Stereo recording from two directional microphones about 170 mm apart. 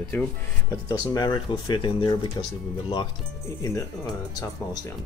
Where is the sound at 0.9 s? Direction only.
20° left (ahead or behind).